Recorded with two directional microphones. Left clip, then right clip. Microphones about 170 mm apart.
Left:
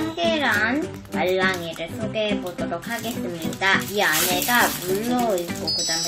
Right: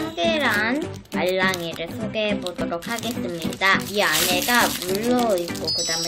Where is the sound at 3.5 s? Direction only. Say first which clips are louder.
Right 1 dB; 30° right (ahead or behind).